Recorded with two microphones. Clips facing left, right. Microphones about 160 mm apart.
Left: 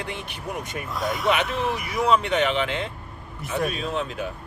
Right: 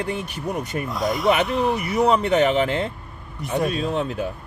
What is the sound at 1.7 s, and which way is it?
Speech, 40° right (ahead or behind).